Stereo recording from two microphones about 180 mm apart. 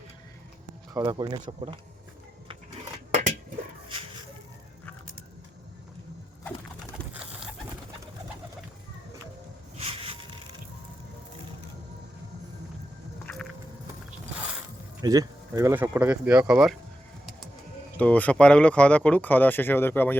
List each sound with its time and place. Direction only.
0.9 s speech: 20° right (ahead or behind)
3.1 s a sound: 40° right (ahead or behind)
9.7 s a sound: 35° right (ahead or behind)
13.2 s music: 5° left (ahead or behind)
15.0 s speech: 20° right (ahead or behind)
17.9 s speech: 10° left (ahead or behind)